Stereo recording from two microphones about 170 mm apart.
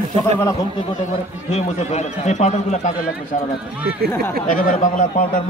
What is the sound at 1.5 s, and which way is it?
A man's voice, 40° left (ahead or behind).